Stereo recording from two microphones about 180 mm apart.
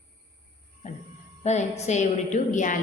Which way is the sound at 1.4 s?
40° left (ahead or behind).